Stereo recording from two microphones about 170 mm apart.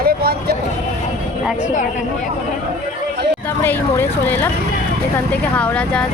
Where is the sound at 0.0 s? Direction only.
65° right (ahead or behind).